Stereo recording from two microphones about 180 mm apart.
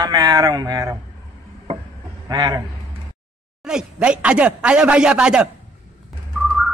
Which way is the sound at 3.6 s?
5° right (ahead or behind).